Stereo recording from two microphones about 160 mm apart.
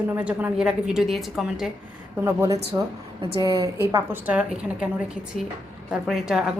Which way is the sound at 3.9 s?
10° right (ahead or behind).